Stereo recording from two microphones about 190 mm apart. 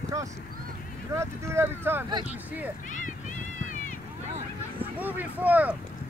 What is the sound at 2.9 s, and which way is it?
Speech, 40° left (ahead or behind).